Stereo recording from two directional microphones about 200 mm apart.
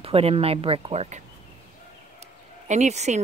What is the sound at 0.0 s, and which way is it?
Speech, 30° right (ahead or behind).